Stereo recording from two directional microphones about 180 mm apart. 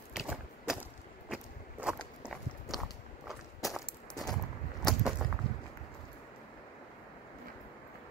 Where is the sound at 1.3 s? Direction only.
5° right (ahead or behind).